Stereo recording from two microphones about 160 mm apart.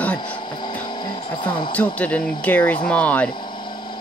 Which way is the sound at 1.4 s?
30° left (ahead or behind).